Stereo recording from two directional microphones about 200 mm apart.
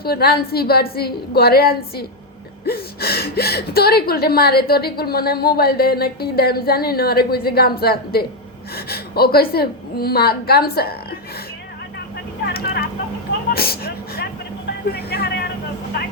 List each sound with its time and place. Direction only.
0.0 s a woman's voice: 50° left (ahead or behind)
12.5 s speech: 50° left (ahead or behind)
13.5 s vehicle: 50° left (ahead or behind)
14.9 s a woman's voice: 50° left (ahead or behind)